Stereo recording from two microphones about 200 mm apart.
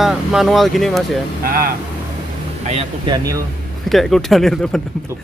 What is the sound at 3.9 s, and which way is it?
Speech, centre (ahead or behind).